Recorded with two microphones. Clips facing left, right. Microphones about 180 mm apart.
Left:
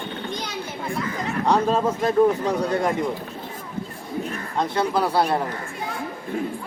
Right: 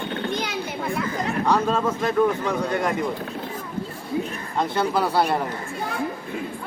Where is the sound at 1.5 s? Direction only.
30° left (ahead or behind).